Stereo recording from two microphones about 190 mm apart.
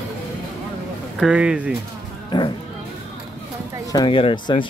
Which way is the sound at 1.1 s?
5° right (ahead or behind).